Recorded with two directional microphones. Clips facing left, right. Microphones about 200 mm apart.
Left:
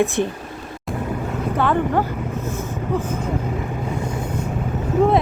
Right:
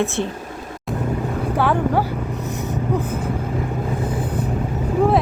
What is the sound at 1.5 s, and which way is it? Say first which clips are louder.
Speech: even; 10° right (ahead or behind).